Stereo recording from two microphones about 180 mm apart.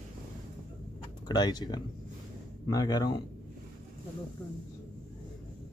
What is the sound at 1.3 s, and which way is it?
Speech, 25° left (ahead or behind).